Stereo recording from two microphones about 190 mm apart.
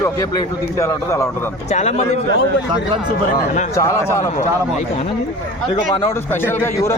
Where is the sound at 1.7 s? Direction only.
40° left (ahead or behind).